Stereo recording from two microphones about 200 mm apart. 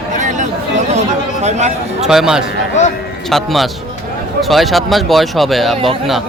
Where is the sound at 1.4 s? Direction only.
35° right (ahead or behind).